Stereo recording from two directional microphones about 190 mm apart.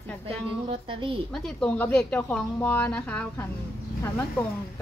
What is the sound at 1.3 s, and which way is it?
Speech, 5° left (ahead or behind).